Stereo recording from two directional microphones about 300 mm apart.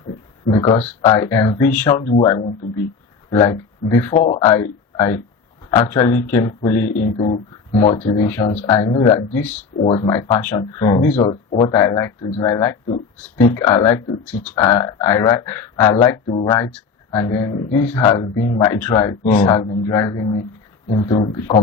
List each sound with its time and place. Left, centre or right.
0.4 s speech: centre
9.7 s speech: centre